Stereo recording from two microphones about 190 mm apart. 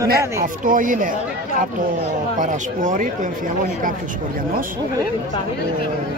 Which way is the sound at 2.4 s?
40° right (ahead or behind).